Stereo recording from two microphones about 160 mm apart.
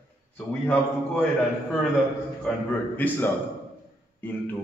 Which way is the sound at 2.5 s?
5° left (ahead or behind).